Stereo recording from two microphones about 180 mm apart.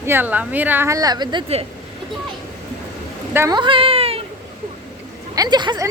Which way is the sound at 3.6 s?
30° right (ahead or behind).